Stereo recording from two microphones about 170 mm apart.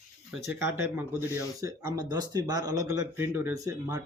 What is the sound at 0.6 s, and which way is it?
Speech, 15° right (ahead or behind).